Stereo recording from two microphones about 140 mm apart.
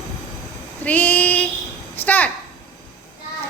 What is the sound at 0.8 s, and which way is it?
Child singing, 10° left (ahead or behind).